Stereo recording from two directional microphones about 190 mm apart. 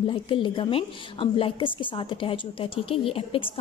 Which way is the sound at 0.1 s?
25° left (ahead or behind).